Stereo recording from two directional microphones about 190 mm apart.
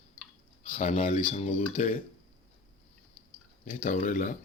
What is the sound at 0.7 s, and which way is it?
Speech, 40° left (ahead or behind).